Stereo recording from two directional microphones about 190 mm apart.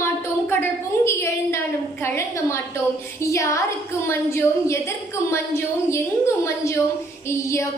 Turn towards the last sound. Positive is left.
turn(degrees=15)  # may be behind; listen again after turning